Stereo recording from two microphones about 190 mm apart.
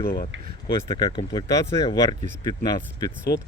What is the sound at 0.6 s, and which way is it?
Speech, 25° left (ahead or behind).